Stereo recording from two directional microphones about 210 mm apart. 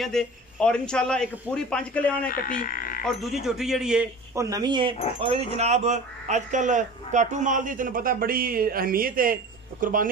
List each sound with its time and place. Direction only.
0.0 s a man's voice: centre (ahead or behind)
2.2 s speech: 40° left (ahead or behind)
3.4 s a man's voice: centre (ahead or behind)
4.4 s a man's voice: 15° right (ahead or behind); by 10.0 s 40° right (ahead or behind)